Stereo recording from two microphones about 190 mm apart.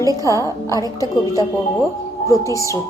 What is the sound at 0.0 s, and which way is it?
A woman's voice, 15° right (ahead or behind).